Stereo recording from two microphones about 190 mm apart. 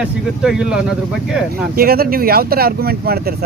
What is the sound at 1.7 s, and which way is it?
Speech, 50° right (ahead or behind).